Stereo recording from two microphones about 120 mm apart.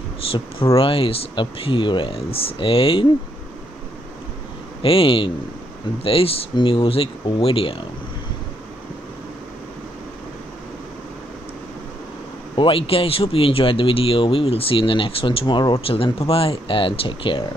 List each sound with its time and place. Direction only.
0.7 s speech: 50° left (ahead or behind)
4.8 s speech: 50° left (ahead or behind)
12.5 s speech: 50° left (ahead or behind)